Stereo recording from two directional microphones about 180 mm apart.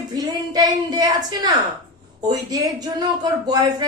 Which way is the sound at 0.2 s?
20° right (ahead or behind).